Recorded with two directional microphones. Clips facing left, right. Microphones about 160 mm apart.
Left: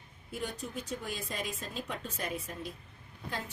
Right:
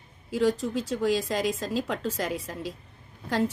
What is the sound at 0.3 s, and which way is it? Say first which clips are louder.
Speech: right 14 dB; 90° right.